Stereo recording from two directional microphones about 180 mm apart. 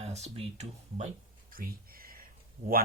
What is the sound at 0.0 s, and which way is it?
Speech, 35° right (ahead or behind).